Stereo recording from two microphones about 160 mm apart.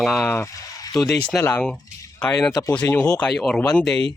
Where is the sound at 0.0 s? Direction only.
Centre (ahead or behind).